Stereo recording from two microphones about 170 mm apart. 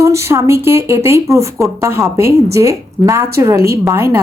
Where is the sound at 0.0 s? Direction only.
15° right (ahead or behind).